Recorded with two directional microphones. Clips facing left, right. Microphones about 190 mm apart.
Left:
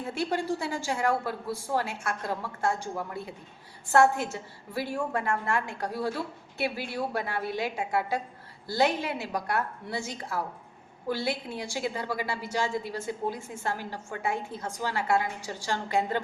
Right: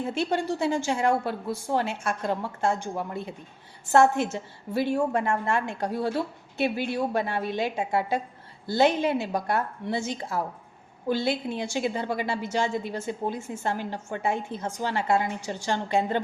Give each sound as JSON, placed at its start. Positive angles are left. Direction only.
{"t": 0.0, "sound": "a woman's voice", "side_deg": -25}
{"t": 4.7, "sound": "a woman's voice", "side_deg": -25}